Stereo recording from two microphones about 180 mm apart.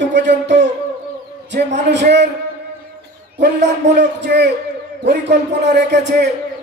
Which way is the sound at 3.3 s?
75° right (ahead or behind).